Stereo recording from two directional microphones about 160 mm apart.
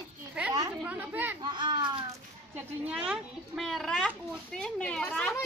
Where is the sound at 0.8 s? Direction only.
10° right (ahead or behind).